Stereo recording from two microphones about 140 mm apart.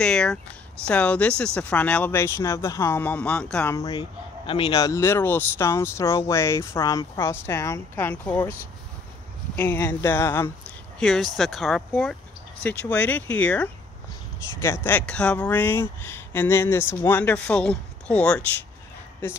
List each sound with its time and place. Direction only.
0.0 s speech: 5° left (ahead or behind)
3.7 s speech: 25° left (ahead or behind)
4.0 s speech: 35° left (ahead or behind); by 8.4 s 15° left (ahead or behind)
9.6 s speech: 15° left (ahead or behind)
11.0 s speech: centre (ahead or behind)